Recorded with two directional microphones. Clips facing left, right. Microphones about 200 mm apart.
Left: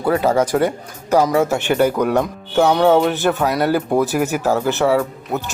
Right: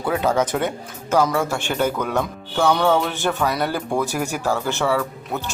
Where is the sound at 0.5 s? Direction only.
5° left (ahead or behind).